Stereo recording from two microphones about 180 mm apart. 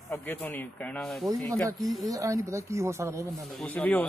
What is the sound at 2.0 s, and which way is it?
Speech, 20° right (ahead or behind).